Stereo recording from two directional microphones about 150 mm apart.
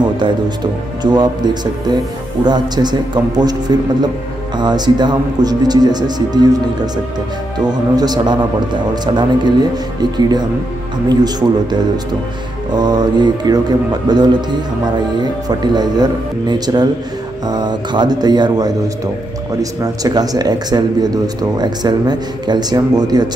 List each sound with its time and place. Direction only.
1.0 s speech: 30° right (ahead or behind)
7.6 s speech: 25° right (ahead or behind)